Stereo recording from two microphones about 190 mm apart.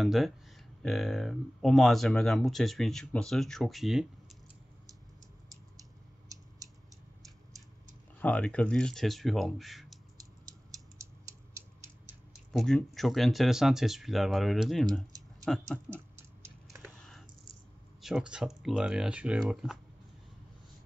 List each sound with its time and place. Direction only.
0.0 s speech: centre (ahead or behind)
5.8 s a sound: 20° right (ahead or behind)
8.2 s speech: 5° left (ahead or behind)
11.0 s mechanisms: 15° right (ahead or behind)
12.5 s speech: centre (ahead or behind)
16.8 s typing: 5° left (ahead or behind)
18.0 s speech: 5° right (ahead or behind)